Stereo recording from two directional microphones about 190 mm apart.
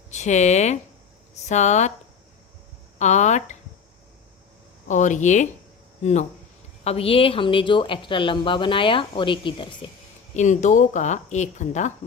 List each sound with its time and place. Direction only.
0.1 s speech: 40° left (ahead or behind)
3.0 s speech: 40° left (ahead or behind)
4.9 s speech: 40° left (ahead or behind)
10.3 s speech: 40° left (ahead or behind)